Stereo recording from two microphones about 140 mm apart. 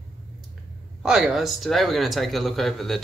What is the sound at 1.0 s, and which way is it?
Speech, 5° right (ahead or behind).